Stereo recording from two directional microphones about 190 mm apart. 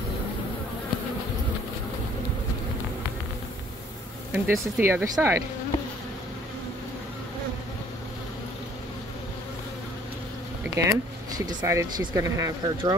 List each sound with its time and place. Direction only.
4.3 s speech: 10° right (ahead or behind)
10.6 s speech: 15° right (ahead or behind)